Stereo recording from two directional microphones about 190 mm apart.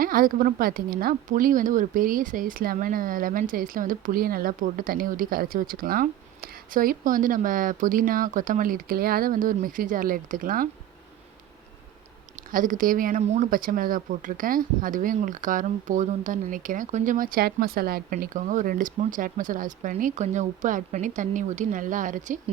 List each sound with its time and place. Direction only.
0.0 s a woman's voice: 50° right (ahead or behind)
12.4 s a woman's voice: 45° right (ahead or behind)